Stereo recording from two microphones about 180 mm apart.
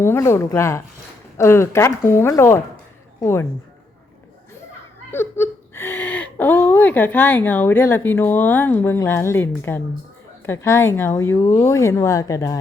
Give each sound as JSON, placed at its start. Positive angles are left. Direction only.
{"t": 0.0, "sound": "speech", "side_deg": 15}
{"t": 5.1, "sound": "whimper", "side_deg": 15}
{"t": 6.3, "sound": "speech", "side_deg": 10}